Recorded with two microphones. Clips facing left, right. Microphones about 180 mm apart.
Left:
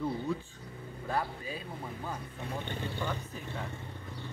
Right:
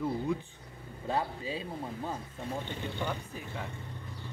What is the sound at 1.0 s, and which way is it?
Speech, 25° right (ahead or behind).